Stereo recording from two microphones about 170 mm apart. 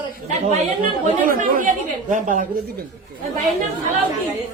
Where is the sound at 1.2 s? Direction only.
50° right (ahead or behind).